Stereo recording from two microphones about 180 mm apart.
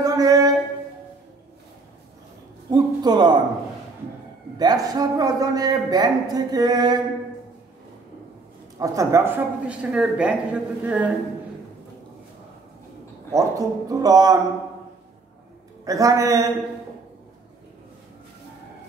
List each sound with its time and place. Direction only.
0.0 s music: 20° right (ahead or behind)
2.7 s a man's voice: 20° right (ahead or behind)
4.6 s speech: 20° right (ahead or behind)
8.7 s speech: 20° right (ahead or behind)
13.3 s speech: 20° right (ahead or behind)
15.8 s speech: 20° right (ahead or behind)